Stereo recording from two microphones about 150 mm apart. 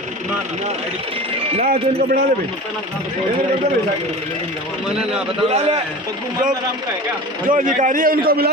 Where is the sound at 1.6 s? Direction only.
80° right.